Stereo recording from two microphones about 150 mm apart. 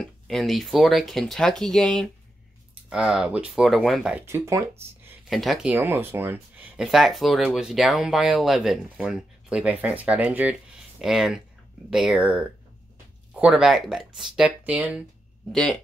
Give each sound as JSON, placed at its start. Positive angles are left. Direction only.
{"t": 0.0, "sound": "speech", "side_deg": 0}
{"t": 4.3, "sound": "speech", "side_deg": -20}
{"t": 5.3, "sound": "speech", "side_deg": 0}
{"t": 5.7, "sound": "speech", "side_deg": -15}
{"t": 6.9, "sound": "speech", "side_deg": 0}
{"t": 15.5, "sound": "speech", "side_deg": 5}